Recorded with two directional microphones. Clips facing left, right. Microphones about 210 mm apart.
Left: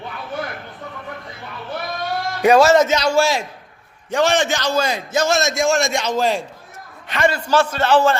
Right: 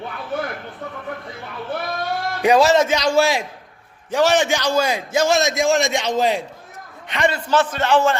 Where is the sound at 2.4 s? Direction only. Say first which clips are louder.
Left 2 dB; 15° right (ahead or behind).